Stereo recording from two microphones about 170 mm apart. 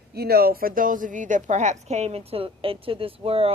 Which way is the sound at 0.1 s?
65° right (ahead or behind).